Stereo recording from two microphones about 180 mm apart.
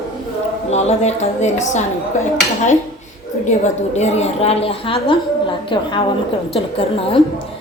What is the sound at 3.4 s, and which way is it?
A woman's voice, 40° left (ahead or behind).